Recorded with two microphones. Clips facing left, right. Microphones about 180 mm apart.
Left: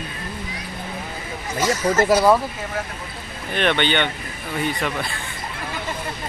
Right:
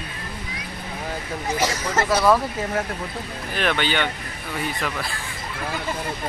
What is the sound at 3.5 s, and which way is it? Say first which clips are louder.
Speech: left 3 dB; 5° right (ahead or behind).